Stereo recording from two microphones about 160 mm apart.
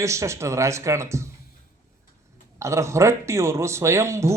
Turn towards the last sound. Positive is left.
turn(degrees=-15)  # may be behind; listen again after turning